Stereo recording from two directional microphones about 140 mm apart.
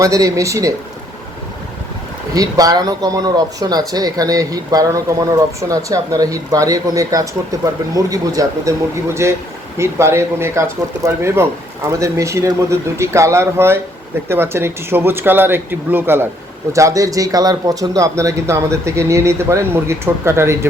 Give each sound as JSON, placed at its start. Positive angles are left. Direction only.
{"t": 0.0, "sound": "speech", "side_deg": -25}
{"t": 2.3, "sound": "speech", "side_deg": -25}